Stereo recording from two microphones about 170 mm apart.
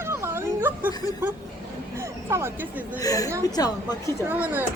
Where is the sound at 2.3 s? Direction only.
15° right (ahead or behind).